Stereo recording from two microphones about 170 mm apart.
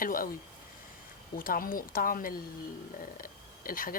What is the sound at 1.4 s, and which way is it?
A woman's voice, 55° left (ahead or behind).